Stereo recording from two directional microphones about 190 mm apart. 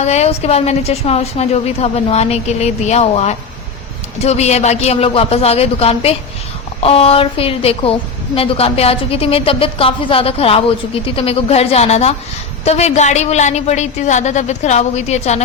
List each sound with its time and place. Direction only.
0.0 s a woman's voice: 35° left (ahead or behind)